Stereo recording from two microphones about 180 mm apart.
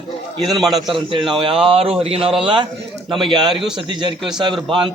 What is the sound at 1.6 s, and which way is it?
A man's voice, 30° right (ahead or behind).